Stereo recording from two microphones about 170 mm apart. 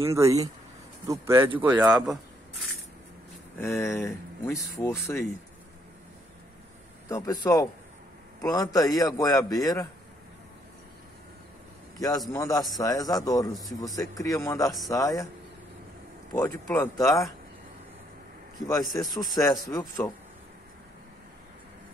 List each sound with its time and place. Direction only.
0.0 s speech: 20° right (ahead or behind)
3.5 s speech: 15° left (ahead or behind)
7.1 s a man's voice: 20° left (ahead or behind)
12.3 s a man's voice: 20° left (ahead or behind)
16.3 s speech: 10° left (ahead or behind)
18.7 s a man's voice: 20° left (ahead or behind)